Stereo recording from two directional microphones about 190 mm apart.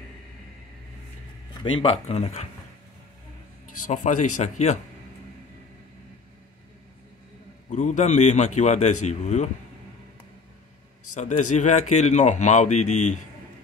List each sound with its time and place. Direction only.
1.6 s speech: 30° left (ahead or behind)
3.8 s speech: 40° left (ahead or behind)
7.7 s speech: 40° left (ahead or behind)
11.1 s speech: 40° left (ahead or behind)